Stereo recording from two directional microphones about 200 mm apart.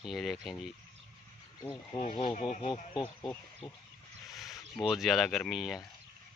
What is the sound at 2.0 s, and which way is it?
Speech, 25° left (ahead or behind).